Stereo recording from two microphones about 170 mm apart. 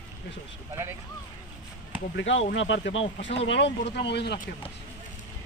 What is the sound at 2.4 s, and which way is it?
Speech, 90° left.